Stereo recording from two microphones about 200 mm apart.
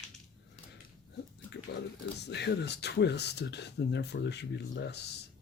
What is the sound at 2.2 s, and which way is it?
Speech, 55° left (ahead or behind).